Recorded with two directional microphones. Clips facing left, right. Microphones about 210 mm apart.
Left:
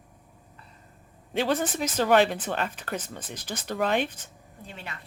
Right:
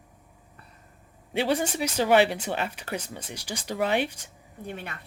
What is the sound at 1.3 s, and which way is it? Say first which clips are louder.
Speech: even; 10° right (ahead or behind).